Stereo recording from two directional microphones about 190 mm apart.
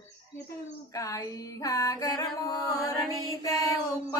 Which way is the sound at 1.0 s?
15° left (ahead or behind).